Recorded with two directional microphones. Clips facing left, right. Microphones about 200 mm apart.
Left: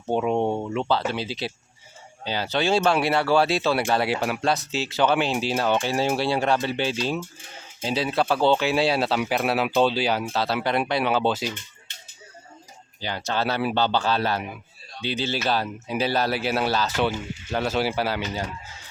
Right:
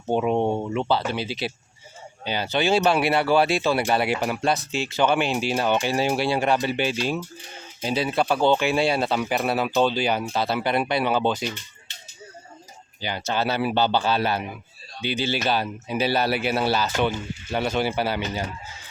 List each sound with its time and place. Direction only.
0.0 s speech: 5° right (ahead or behind)
13.0 s speech: centre (ahead or behind)